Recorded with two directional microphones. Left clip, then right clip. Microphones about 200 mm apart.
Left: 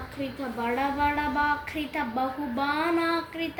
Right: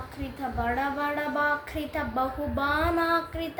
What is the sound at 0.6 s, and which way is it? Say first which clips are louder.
Speech: left 3 dB; 15° right (ahead or behind).